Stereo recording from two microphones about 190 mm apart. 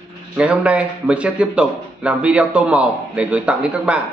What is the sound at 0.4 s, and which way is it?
A man's voice, 5° right (ahead or behind).